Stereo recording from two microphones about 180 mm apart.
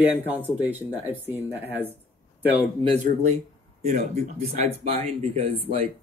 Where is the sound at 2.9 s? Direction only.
35° right (ahead or behind).